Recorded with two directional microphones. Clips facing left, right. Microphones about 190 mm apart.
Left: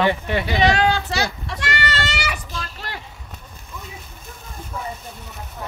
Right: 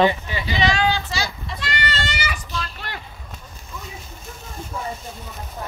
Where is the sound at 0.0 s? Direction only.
65° left (ahead or behind).